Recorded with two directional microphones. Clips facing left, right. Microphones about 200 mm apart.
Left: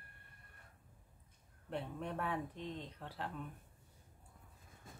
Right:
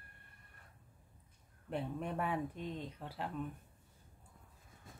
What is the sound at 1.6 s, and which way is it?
Speech, 10° right (ahead or behind).